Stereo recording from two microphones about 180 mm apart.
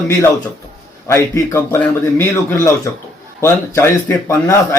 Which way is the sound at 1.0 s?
15° left (ahead or behind).